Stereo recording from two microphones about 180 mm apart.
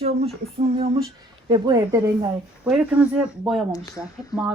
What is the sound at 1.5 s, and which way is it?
Speech, 25° right (ahead or behind).